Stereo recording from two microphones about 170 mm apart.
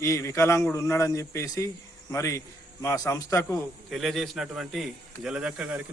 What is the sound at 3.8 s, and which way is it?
A man's voice, centre (ahead or behind).